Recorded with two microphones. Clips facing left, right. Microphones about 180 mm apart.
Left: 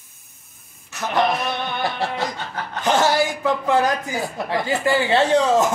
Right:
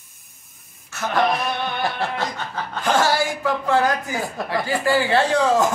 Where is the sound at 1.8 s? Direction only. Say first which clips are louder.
Left 2 dB; 20° left (ahead or behind).